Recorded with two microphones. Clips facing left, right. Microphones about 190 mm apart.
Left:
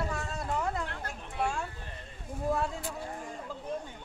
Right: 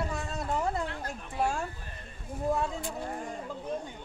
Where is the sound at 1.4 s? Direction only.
40° right (ahead or behind).